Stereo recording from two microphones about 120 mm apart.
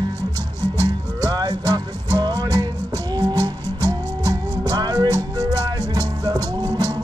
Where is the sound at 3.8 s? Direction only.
35° right (ahead or behind).